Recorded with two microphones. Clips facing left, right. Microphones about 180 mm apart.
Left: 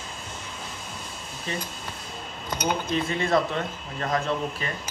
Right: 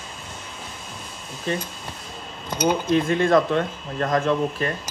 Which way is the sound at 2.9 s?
55° right (ahead or behind).